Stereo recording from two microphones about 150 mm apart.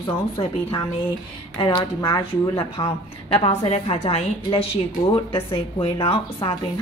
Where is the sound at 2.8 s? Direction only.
40° left (ahead or behind).